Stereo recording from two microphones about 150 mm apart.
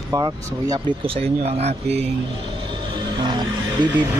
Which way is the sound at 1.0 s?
40° right (ahead or behind).